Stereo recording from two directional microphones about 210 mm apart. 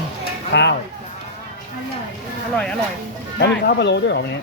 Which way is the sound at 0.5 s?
55° left (ahead or behind).